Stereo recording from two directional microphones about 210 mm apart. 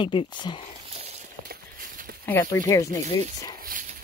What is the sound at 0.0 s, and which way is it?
Speech, 20° left (ahead or behind).